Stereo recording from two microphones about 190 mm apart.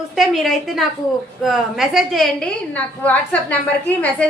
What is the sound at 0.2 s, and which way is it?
A woman's voice, centre (ahead or behind).